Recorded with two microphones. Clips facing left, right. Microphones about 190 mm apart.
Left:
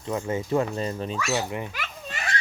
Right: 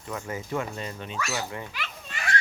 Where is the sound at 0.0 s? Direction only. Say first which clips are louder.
Left 6 dB; 25° left (ahead or behind).